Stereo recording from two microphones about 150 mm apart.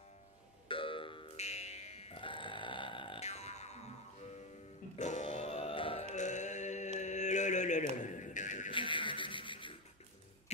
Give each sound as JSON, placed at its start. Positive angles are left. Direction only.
{"t": 0.7, "sound": "music", "side_deg": 35}
{"t": 4.9, "sound": "grunt", "side_deg": 50}
{"t": 6.1, "sound": "music", "side_deg": 50}
{"t": 7.0, "sound": "mantra", "side_deg": 50}
{"t": 8.0, "sound": "a sound", "side_deg": 55}
{"t": 8.7, "sound": "a sound", "side_deg": 35}